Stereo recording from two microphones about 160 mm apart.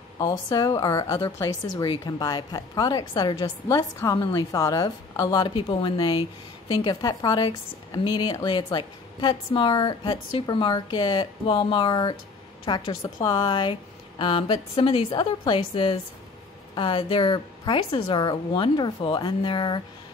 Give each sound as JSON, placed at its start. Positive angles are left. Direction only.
{"t": 0.2, "sound": "a woman's voice", "side_deg": 25}